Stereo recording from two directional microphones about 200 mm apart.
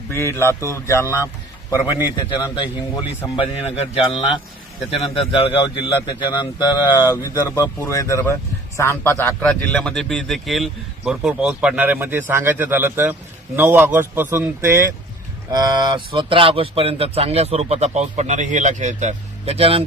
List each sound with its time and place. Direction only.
0.1 s a man's voice: 15° left (ahead or behind); by 19.8 s 30° right (ahead or behind)